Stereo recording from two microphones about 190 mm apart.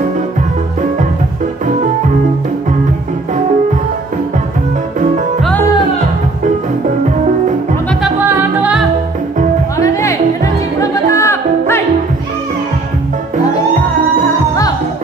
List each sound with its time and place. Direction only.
8.0 s music: 10° right (ahead or behind)
9.8 s music: 15° left (ahead or behind)